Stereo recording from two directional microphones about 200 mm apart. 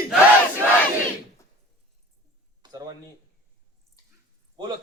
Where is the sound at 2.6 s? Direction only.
20° right (ahead or behind).